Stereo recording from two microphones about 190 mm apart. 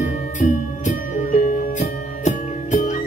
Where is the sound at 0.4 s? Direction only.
40° left (ahead or behind).